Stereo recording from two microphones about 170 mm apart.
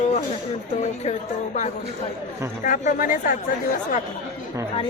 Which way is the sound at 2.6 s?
50° left (ahead or behind).